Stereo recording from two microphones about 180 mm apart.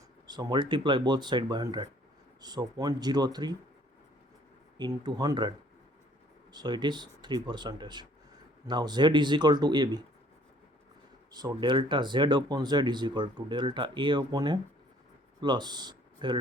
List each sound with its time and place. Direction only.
0.3 s speech: 25° right (ahead or behind)
4.8 s speech: 25° right (ahead or behind)
6.5 s speech: 25° right (ahead or behind)
11.3 s speech: 20° right (ahead or behind)